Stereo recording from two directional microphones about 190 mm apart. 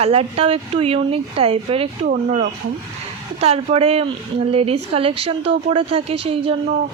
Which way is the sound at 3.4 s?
30° right (ahead or behind).